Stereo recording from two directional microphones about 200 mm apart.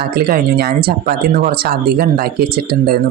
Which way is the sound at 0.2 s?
50° right (ahead or behind).